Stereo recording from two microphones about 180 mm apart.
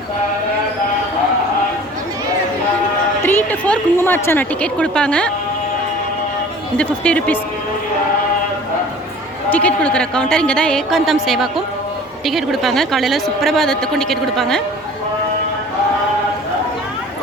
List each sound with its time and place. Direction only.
3.2 s a woman's voice: 10° left (ahead or behind)
6.7 s a woman's voice: 5° left (ahead or behind)
9.5 s speech: 5° left (ahead or behind)